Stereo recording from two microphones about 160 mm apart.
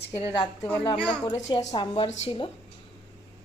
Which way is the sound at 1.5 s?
25° left (ahead or behind).